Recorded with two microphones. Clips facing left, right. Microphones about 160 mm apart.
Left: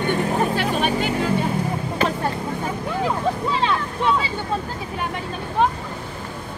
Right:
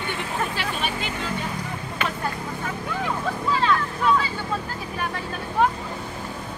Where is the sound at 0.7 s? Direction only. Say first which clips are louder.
Left 7 dB; 40° left (ahead or behind).